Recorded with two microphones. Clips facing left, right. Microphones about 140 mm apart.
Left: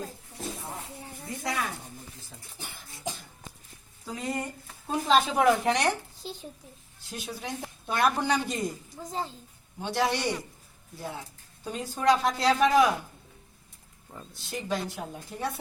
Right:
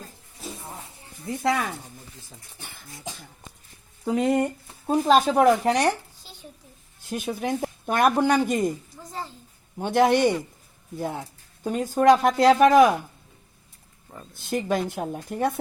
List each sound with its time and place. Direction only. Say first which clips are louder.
1.4 s speech: right 8 dB; 65° right (ahead or behind)
4.0 s speech: right 11 dB; 65° right (ahead or behind)
4.9 s a woman's voice: right 5 dB; 45° right (ahead or behind)
7.1 s speech: right 9 dB; 50° right (ahead or behind)
9.7 s speech: right 8 dB; 50° right (ahead or behind)
14.3 s speech: right 7 dB; 55° right (ahead or behind)